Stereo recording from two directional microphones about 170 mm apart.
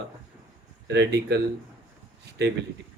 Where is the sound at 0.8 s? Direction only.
80° right.